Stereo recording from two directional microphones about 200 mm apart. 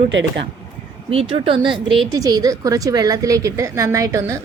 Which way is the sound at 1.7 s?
Centre (ahead or behind).